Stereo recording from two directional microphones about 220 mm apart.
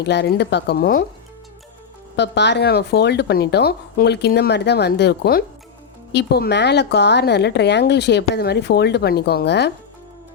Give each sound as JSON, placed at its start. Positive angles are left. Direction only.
{"t": 0.0, "sound": "speech", "side_deg": 50}
{"t": 2.1, "sound": "speech", "side_deg": 50}